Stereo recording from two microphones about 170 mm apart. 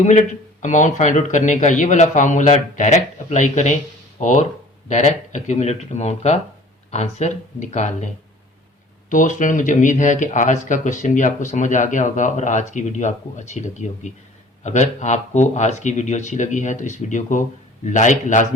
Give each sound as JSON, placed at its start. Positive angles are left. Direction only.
{"t": 0.6, "sound": "speech", "side_deg": 45}